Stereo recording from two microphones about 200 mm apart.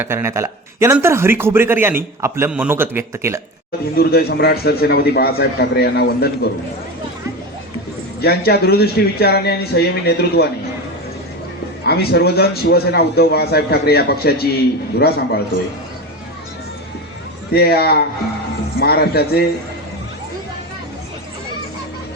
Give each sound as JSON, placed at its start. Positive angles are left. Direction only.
{"t": 0.0, "sound": "speech", "side_deg": -10}
{"t": 3.9, "sound": "a man's voice", "side_deg": 50}
{"t": 8.2, "sound": "a man's voice", "side_deg": 50}
{"t": 11.9, "sound": "a man's voice", "side_deg": 55}
{"t": 17.5, "sound": "a man's voice", "side_deg": 50}